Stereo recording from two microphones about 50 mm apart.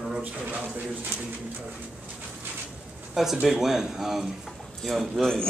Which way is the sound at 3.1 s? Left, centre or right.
Centre.